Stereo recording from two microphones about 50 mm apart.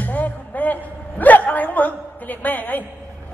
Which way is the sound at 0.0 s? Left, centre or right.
Left.